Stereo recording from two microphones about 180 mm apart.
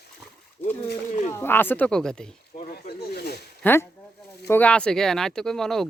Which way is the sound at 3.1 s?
65° left (ahead or behind).